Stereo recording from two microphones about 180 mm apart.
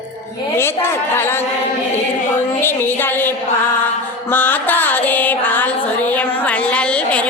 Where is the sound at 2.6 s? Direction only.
10° left (ahead or behind).